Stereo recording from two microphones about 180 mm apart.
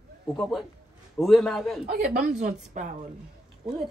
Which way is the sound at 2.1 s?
50° right (ahead or behind).